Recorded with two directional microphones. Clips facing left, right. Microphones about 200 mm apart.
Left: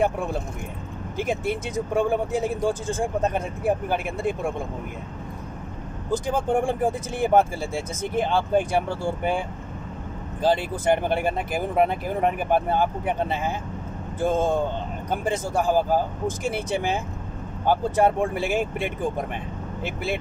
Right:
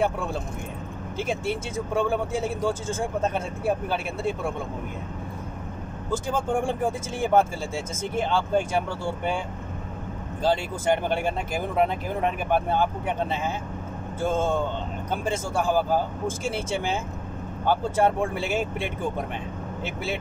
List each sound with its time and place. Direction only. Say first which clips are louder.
0.0 s speech: left 2 dB; 15° left (ahead or behind)
6.0 s speech: left 3 dB; 15° left (ahead or behind)
10.4 s speech: left 2 dB; 15° left (ahead or behind)